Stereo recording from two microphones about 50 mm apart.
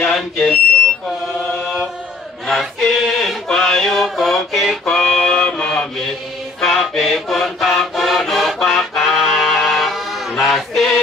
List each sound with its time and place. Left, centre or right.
0.0 s smoke detector: centre
2.4 s chant: centre
2.9 s mantra: centre
4.9 s music: centre
5.3 s music: centre
6.6 s music: centre
10.4 s chant: centre